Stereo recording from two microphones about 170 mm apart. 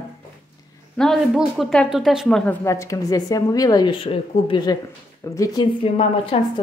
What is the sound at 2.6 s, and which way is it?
A woman's voice, 15° left (ahead or behind).